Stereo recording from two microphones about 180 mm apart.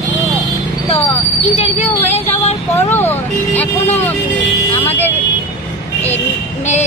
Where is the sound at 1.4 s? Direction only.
35° left (ahead or behind).